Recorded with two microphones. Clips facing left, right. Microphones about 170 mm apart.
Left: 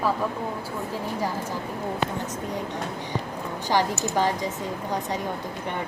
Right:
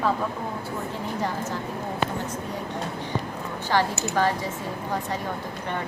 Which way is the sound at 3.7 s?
15° left (ahead or behind).